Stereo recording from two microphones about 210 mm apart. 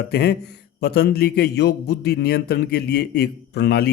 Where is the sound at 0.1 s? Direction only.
50° left (ahead or behind).